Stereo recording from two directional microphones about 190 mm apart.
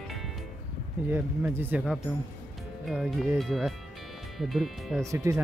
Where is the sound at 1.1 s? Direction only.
10° right (ahead or behind).